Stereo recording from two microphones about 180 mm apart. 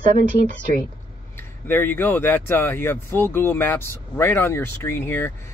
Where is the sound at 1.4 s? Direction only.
10° left (ahead or behind).